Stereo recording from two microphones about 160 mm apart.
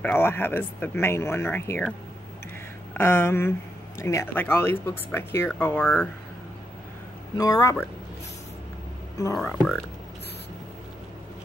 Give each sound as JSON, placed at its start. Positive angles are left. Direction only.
{"t": 0.0, "sound": "speech", "side_deg": 10}
{"t": 7.3, "sound": "speech", "side_deg": 20}
{"t": 9.4, "sound": "speech", "side_deg": 5}